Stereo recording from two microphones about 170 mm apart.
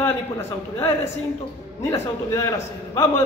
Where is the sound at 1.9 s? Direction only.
20° left (ahead or behind).